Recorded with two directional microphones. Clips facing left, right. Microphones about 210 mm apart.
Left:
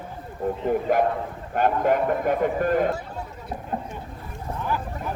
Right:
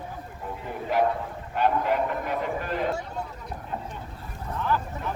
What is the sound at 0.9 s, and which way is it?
Speech, 50° left (ahead or behind).